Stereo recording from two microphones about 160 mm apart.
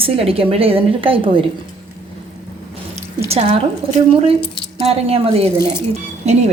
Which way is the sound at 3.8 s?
35° right (ahead or behind).